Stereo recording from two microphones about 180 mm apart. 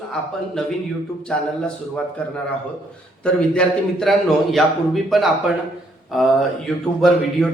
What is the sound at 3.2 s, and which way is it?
A man's voice, 5° left (ahead or behind).